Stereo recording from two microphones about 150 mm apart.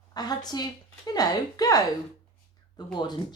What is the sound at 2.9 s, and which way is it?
Speech, 30° left (ahead or behind).